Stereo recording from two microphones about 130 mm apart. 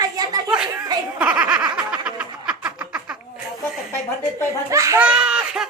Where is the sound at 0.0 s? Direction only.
30° right (ahead or behind).